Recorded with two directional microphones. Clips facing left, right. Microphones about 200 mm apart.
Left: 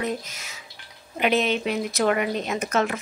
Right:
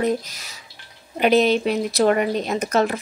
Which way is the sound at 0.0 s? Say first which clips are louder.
Right 6 dB; 35° right (ahead or behind).